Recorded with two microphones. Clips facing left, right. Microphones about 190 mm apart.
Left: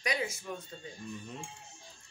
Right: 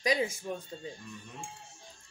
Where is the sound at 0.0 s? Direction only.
30° right (ahead or behind).